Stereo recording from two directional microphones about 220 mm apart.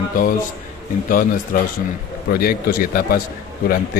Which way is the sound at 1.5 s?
40° left (ahead or behind).